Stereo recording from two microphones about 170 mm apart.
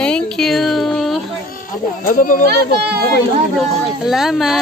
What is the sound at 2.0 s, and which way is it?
Speech, 55° left (ahead or behind).